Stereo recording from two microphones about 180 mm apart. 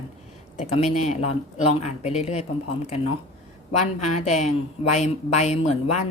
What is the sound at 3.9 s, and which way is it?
Speech, 40° left (ahead or behind).